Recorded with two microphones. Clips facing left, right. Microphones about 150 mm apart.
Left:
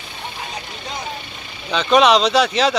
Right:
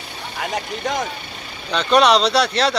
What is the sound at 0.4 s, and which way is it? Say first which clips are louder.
Speech: right 12 dB; 90° right.